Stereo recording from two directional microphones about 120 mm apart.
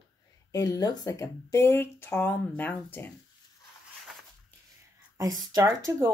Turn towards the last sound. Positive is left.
turn(degrees=-30)  # may be behind; listen again after turning